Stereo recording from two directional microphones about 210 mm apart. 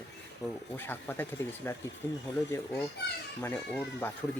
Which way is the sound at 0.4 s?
5° left (ahead or behind).